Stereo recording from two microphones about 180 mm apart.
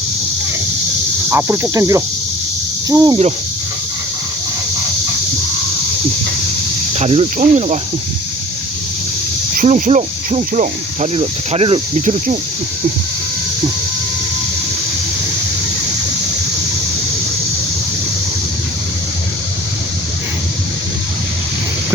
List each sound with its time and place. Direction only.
1.3 s cricket: 15° right (ahead or behind)
2.9 s speech: 20° right (ahead or behind)
6.9 s speech: 40° right (ahead or behind)
9.6 s speech: 45° right (ahead or behind)